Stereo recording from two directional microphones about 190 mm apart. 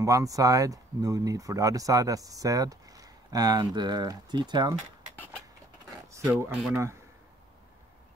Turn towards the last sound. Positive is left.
turn(degrees=-10)  # may be behind; listen again after turning